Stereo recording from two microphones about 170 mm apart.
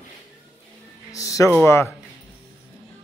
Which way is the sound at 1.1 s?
20° left (ahead or behind).